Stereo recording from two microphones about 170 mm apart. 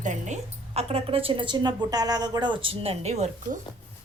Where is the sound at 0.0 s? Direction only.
45° right (ahead or behind).